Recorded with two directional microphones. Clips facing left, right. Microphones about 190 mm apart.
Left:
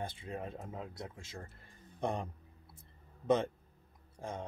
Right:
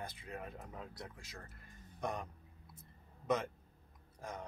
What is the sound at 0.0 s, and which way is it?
Speech, 25° left (ahead or behind).